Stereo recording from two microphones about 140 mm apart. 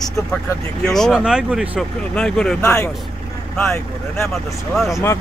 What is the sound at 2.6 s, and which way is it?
Speech, 20° left (ahead or behind).